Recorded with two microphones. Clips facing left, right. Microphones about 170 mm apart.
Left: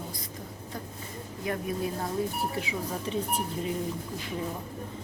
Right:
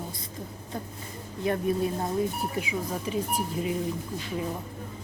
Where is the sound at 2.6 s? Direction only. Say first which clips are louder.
Right 2 dB; 10° right (ahead or behind).